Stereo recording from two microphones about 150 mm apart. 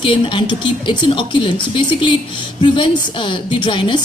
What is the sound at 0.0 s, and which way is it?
A woman's voice, 35° left (ahead or behind).